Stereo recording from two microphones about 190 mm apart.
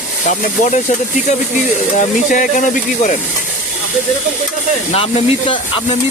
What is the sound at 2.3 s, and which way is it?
Speech, 45° left (ahead or behind).